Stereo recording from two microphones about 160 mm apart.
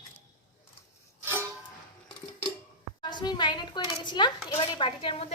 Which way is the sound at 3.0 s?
30° left (ahead or behind).